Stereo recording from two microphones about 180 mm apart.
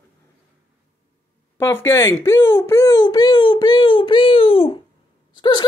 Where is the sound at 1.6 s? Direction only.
15° left (ahead or behind).